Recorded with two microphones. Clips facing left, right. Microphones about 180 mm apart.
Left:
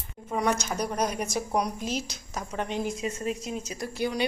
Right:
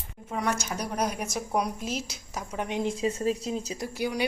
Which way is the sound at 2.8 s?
30° right (ahead or behind).